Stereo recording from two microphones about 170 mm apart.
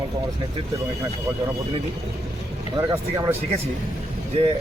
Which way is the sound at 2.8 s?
20° right (ahead or behind).